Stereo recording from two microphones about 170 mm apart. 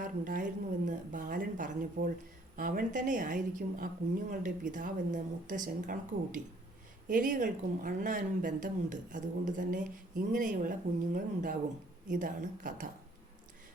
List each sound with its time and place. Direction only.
0.0 s a woman's voice: 50° right (ahead or behind)